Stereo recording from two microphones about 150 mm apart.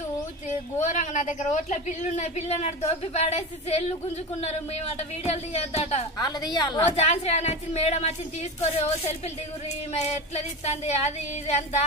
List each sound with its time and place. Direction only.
0.7 s a woman's voice: 50° left (ahead or behind)
6.1 s a woman's voice: 25° left (ahead or behind)
7.0 s a woman's voice: 45° left (ahead or behind)
9.9 s a woman's voice: 45° left (ahead or behind)